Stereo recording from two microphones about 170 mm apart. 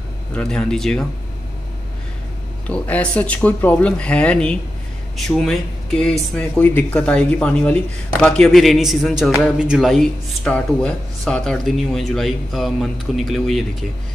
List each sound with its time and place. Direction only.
0.3 s speech: 5° left (ahead or behind)
2.7 s speech: 10° left (ahead or behind)